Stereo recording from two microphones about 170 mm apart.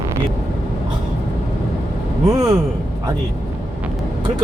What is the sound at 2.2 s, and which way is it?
Speech, 20° right (ahead or behind).